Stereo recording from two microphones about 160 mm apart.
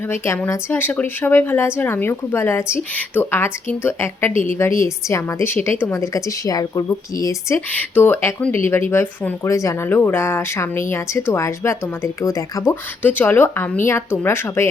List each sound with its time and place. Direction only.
0.1 s a woman's voice: 15° left (ahead or behind)